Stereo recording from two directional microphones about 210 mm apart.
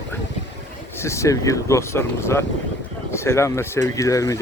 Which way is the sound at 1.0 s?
15° left (ahead or behind).